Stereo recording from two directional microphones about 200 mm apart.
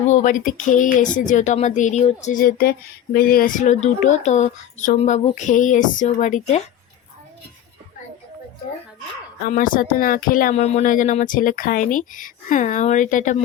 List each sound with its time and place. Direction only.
0.1 s speech: 40° left (ahead or behind)
9.5 s speech: 40° left (ahead or behind)